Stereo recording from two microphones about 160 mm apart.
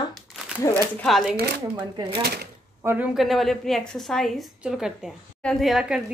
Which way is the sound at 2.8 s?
10° right (ahead or behind).